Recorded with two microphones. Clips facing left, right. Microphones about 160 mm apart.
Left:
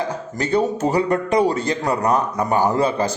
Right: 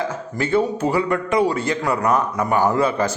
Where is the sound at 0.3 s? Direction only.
40° left (ahead or behind).